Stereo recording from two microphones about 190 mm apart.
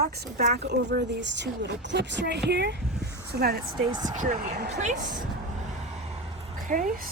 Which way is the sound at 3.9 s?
20° right (ahead or behind).